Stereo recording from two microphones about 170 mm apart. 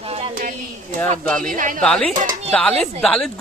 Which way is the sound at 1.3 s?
5° left (ahead or behind).